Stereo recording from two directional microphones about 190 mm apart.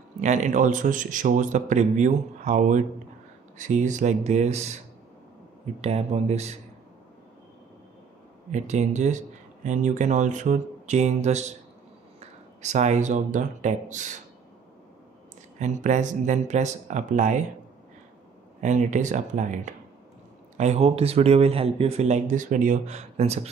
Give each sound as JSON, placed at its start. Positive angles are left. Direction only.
{"t": 0.2, "sound": "speech", "side_deg": -40}
{"t": 5.8, "sound": "speech", "side_deg": -35}
{"t": 8.5, "sound": "speech", "side_deg": -35}
{"t": 15.6, "sound": "speech", "side_deg": -40}
{"t": 18.6, "sound": "speech", "side_deg": -40}